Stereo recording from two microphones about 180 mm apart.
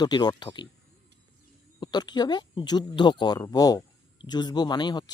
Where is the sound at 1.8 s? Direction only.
25° left (ahead or behind).